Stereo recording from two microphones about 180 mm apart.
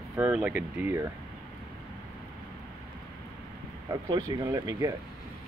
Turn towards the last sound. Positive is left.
turn(degrees=-15)  # may be behind; listen again after turning